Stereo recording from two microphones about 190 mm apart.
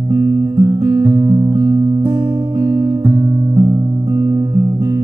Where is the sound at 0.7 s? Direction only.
15° right (ahead or behind).